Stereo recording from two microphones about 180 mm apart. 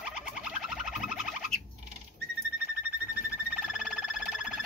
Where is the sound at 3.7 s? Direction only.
5° right (ahead or behind).